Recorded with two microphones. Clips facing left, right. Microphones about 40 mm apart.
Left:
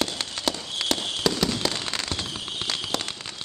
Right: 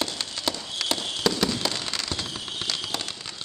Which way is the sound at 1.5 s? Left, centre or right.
Centre.